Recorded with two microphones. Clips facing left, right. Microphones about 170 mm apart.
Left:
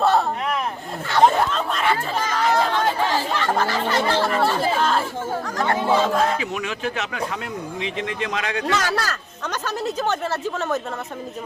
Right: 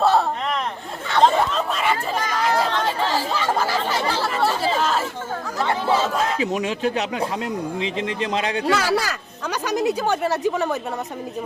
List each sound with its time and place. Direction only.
0.0 s a sound: centre (ahead or behind)
1.1 s speech: centre (ahead or behind)
2.6 s chatter: 10° left (ahead or behind)
3.2 s speech: 5° right (ahead or behind)
6.4 s a man's voice: 35° right (ahead or behind)
8.7 s speech: 10° right (ahead or behind)